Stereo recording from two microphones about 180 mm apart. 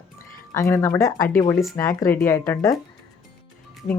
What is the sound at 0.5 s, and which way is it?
Speech, 15° left (ahead or behind).